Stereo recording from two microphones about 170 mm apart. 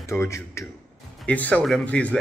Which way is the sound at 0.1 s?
15° left (ahead or behind).